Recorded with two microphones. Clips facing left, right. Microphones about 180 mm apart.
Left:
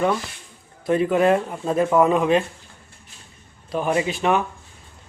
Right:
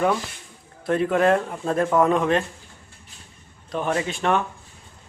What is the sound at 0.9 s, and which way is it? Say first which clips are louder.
A man's voice: left 1 dB; 5° left (ahead or behind).